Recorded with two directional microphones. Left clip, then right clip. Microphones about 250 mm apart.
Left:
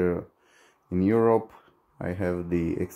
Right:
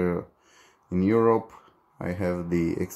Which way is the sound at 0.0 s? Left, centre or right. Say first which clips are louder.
Left 1 dB; centre.